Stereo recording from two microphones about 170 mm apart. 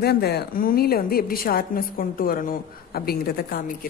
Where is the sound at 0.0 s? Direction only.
70° left (ahead or behind).